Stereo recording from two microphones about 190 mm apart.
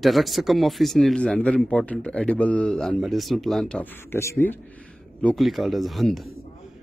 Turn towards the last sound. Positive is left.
turn(degrees=0)  # may be behind; listen again after turning